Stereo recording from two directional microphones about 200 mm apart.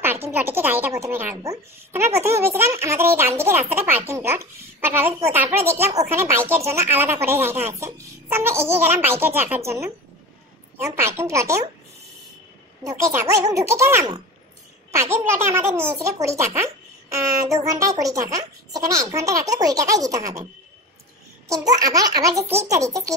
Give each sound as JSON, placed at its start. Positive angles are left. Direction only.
{"t": 0.0, "sound": "a child's voice", "side_deg": -10}
{"t": 12.8, "sound": "a child's voice", "side_deg": -15}
{"t": 21.5, "sound": "a child's voice", "side_deg": -15}